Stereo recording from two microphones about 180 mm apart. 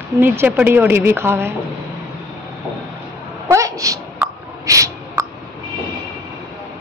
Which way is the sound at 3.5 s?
15° right (ahead or behind).